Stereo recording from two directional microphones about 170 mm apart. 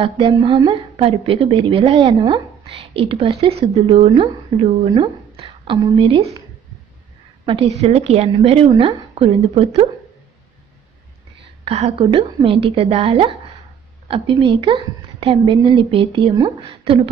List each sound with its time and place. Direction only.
0.0 s a woman's voice: 30° right (ahead or behind)
7.4 s a woman's voice: 35° right (ahead or behind)
11.6 s a woman's voice: 35° right (ahead or behind)